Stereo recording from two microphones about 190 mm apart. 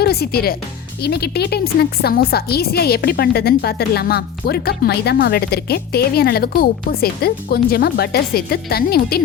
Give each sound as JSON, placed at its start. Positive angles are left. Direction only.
{"t": 0.0, "sound": "a woman's voice", "side_deg": 55}